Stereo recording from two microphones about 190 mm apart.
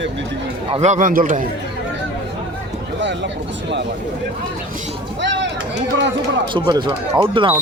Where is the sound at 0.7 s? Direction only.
35° right (ahead or behind).